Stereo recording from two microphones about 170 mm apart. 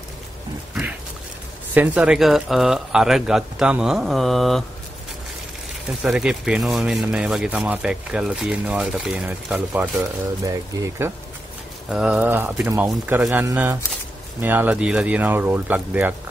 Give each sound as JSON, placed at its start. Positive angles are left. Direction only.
{"t": 1.7, "sound": "speech", "side_deg": -10}
{"t": 6.0, "sound": "speech", "side_deg": -5}
{"t": 11.9, "sound": "speech", "side_deg": -5}